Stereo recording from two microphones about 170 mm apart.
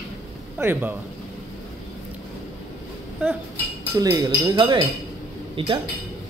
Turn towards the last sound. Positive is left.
turn(degrees=-30)  # may be behind; listen again after turning